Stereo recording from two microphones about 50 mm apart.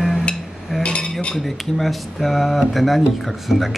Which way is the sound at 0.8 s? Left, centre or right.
Left.